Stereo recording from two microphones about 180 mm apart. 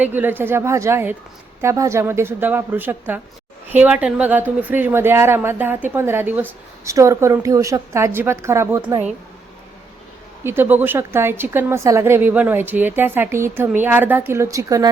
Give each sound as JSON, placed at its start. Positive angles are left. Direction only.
{"t": 0.0, "sound": "a woman's voice", "side_deg": -10}
{"t": 10.4, "sound": "a woman's voice", "side_deg": -10}